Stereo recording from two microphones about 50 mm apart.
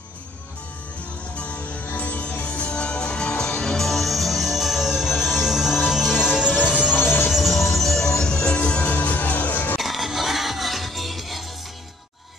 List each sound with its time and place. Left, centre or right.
1.3 s music: left; by 7.0 s centre
7.2 s music: centre
8.2 s music: centre
8.8 s music: left
9.8 s music: centre